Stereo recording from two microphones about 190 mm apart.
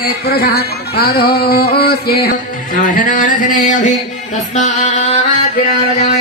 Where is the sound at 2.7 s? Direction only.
45° left (ahead or behind).